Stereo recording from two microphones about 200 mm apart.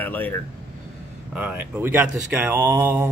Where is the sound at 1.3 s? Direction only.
10° right (ahead or behind).